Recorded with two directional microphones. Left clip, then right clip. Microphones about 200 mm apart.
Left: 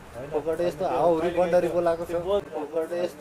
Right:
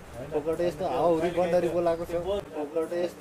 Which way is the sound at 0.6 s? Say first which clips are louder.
Left 3 dB; centre (ahead or behind).